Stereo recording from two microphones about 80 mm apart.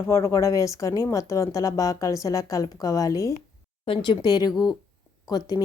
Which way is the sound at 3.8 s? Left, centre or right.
Left.